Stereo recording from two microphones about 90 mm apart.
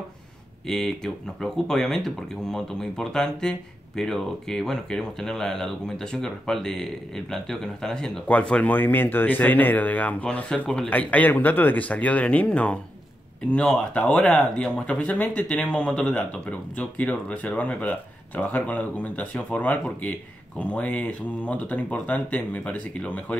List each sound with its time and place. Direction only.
0.7 s speech: 5° left (ahead or behind)